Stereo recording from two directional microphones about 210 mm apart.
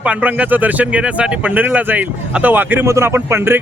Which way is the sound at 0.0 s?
5° right (ahead or behind).